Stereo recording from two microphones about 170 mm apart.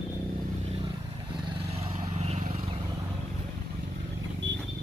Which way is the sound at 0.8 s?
30° right (ahead or behind).